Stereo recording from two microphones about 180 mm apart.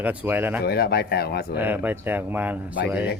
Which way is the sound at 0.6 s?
60° left (ahead or behind).